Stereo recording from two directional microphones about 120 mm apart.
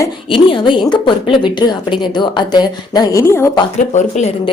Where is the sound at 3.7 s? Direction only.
75° left (ahead or behind).